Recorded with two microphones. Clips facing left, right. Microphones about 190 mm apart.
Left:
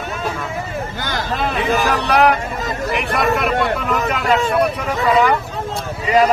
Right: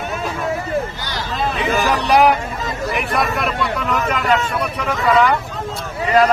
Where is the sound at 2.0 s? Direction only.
10° right (ahead or behind).